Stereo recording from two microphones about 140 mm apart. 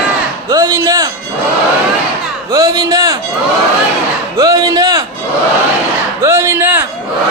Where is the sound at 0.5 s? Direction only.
25° right (ahead or behind).